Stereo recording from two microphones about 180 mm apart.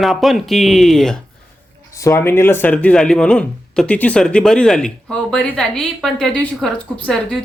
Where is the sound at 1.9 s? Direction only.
15° left (ahead or behind).